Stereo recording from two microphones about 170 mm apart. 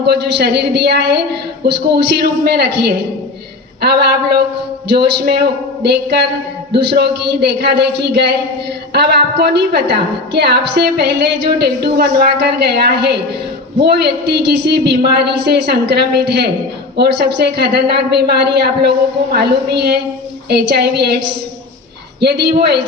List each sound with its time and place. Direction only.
0.0 s a woman's voice: 75° right (ahead or behind)
22.2 s a woman's voice: 75° right (ahead or behind)